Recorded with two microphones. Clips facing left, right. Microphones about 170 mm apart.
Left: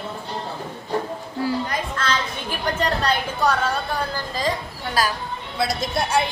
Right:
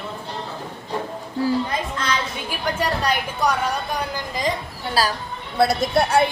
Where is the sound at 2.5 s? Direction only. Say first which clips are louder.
Left 1 dB; 10° right (ahead or behind).